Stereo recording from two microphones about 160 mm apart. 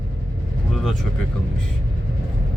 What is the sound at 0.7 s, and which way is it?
Vehicle, 5° left (ahead or behind).